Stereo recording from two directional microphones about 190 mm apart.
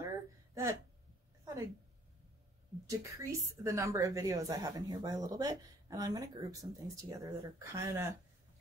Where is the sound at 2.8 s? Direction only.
15° right (ahead or behind).